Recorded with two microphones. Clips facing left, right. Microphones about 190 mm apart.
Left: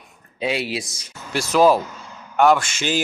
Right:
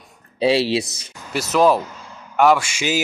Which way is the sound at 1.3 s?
Centre (ahead or behind).